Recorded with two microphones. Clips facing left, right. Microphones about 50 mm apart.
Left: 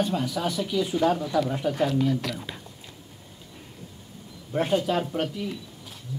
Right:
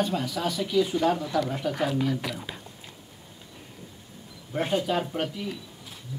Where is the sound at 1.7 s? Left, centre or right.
Centre.